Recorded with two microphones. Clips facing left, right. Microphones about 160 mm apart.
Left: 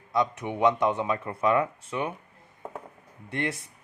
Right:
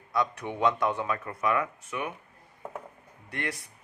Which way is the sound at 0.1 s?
20° left (ahead or behind).